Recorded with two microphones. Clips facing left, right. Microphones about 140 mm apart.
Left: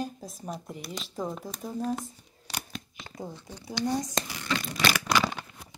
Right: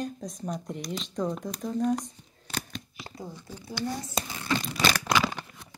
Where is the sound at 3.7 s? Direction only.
15° left (ahead or behind).